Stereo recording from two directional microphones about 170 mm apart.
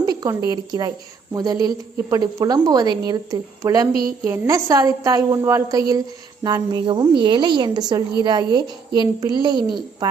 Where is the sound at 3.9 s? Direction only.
60° right (ahead or behind).